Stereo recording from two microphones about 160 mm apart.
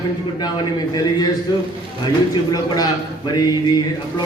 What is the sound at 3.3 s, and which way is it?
Speech, 25° left (ahead or behind).